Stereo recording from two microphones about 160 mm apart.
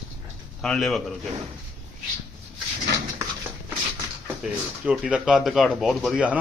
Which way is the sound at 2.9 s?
90° right.